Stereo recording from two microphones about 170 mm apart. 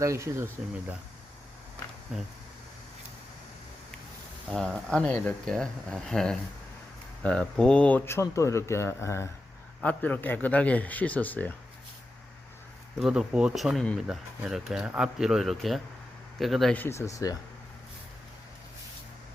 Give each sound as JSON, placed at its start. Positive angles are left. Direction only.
{"t": 0.0, "sound": "speech", "side_deg": -15}
{"t": 2.1, "sound": "speech", "side_deg": -5}
{"t": 4.4, "sound": "a man's voice", "side_deg": 5}
{"t": 13.0, "sound": "a man's voice", "side_deg": -5}